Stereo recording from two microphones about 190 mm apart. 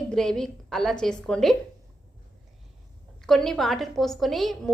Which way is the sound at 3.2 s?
Centre (ahead or behind).